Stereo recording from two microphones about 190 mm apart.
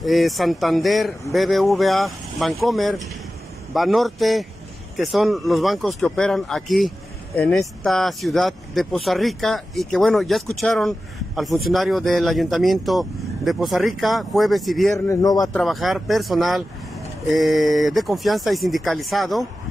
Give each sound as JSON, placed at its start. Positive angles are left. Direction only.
{"t": 0.0, "sound": "speech", "side_deg": 0}
{"t": 15.0, "sound": "a man's voice", "side_deg": 15}
{"t": 15.5, "sound": "speech", "side_deg": 0}